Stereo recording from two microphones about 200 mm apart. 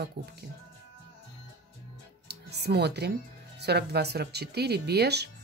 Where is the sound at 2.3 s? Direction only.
55° right (ahead or behind).